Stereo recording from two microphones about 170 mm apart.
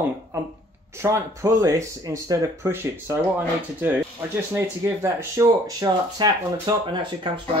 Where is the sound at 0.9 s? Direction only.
15° right (ahead or behind).